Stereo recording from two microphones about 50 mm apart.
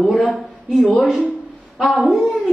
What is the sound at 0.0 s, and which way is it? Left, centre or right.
Speech, centre.